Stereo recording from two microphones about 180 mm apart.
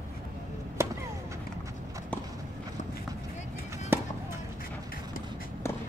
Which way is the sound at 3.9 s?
10° right (ahead or behind).